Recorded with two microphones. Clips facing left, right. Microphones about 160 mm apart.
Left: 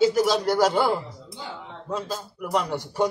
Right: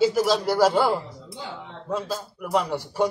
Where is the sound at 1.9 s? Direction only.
5° right (ahead or behind).